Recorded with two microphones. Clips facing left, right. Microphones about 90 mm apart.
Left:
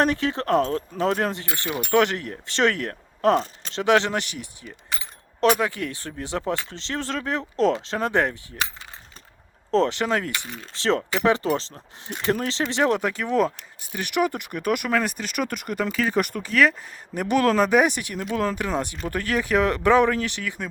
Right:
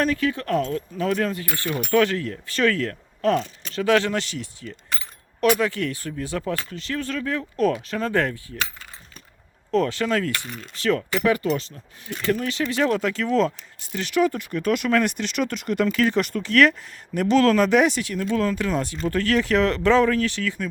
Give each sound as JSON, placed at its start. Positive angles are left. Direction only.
{"t": 0.0, "sound": "speech", "side_deg": 25}
{"t": 3.2, "sound": "speech", "side_deg": 35}
{"t": 9.7, "sound": "speech", "side_deg": 25}